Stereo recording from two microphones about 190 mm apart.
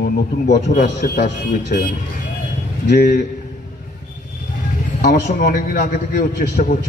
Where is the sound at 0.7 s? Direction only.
45° left (ahead or behind).